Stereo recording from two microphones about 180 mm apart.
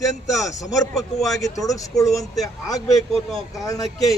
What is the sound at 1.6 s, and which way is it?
Speech, 20° left (ahead or behind).